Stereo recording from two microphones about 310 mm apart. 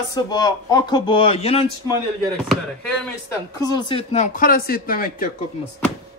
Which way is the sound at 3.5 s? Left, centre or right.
Centre.